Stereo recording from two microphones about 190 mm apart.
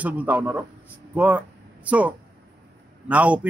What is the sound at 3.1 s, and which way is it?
Speech, 5° right (ahead or behind).